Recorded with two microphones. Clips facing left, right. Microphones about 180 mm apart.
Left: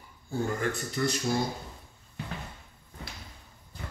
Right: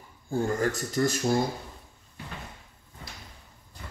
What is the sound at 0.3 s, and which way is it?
Speech, 40° right (ahead or behind).